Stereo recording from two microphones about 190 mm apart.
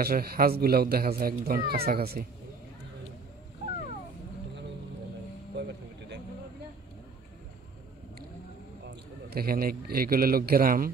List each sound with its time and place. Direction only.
0.0 s speech: 55° right (ahead or behind)
8.8 s a man's voice: 55° right (ahead or behind)